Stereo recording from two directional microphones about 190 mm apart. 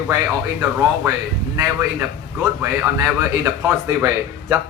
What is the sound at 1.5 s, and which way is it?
A man's voice, 15° right (ahead or behind).